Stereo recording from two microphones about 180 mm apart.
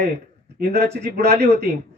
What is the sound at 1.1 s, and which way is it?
Speech, 65° right (ahead or behind).